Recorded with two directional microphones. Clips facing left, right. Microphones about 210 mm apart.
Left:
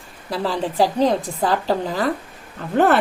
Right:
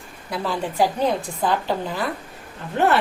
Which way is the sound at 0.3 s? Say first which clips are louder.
Left 3 dB; 35° left (ahead or behind).